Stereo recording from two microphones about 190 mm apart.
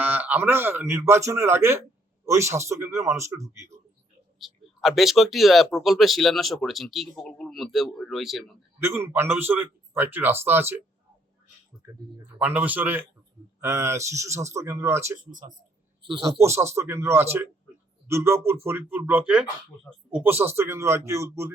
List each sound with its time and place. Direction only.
0.0 s speech: 10° right (ahead or behind)
4.4 s speech: centre (ahead or behind)
8.8 s speech: 15° right (ahead or behind)
11.8 s speech: 10° right (ahead or behind)
15.3 s speech: 45° right (ahead or behind)
16.0 s a man's voice: 25° right (ahead or behind)
16.4 s speech: 15° right (ahead or behind)